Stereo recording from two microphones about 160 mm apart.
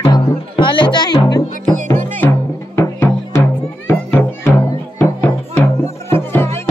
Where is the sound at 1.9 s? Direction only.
15° left (ahead or behind).